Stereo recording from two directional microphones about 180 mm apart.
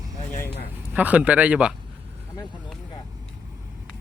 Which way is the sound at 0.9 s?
10° right (ahead or behind).